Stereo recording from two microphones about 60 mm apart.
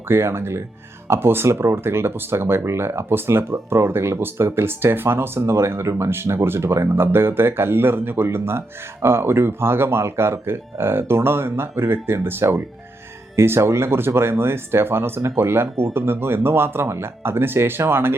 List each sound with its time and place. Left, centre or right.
0.1 s speech: right